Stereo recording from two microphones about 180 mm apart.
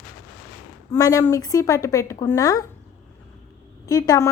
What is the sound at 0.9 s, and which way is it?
A woman's voice, 20° left (ahead or behind).